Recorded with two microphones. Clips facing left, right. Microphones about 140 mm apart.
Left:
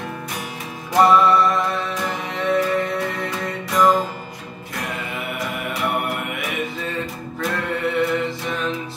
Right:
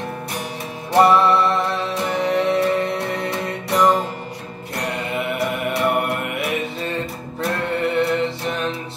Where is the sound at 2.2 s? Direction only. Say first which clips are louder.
Right 9 dB; 70° right (ahead or behind).